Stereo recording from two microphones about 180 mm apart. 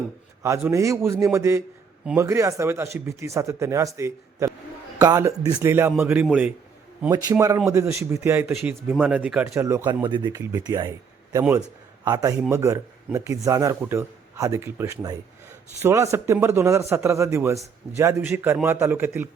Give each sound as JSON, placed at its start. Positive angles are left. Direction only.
{"t": 0.4, "sound": "a man's voice", "side_deg": -15}
{"t": 7.1, "sound": "a man's voice", "side_deg": -20}
{"t": 10.0, "sound": "a man's voice", "side_deg": -25}